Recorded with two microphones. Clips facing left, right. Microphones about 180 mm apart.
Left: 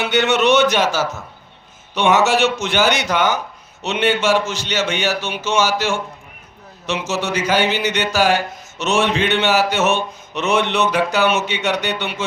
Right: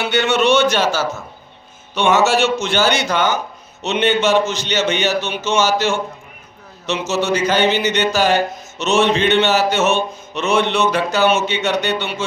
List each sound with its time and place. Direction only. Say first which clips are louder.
0.0 s speech: even; 20° left (ahead or behind)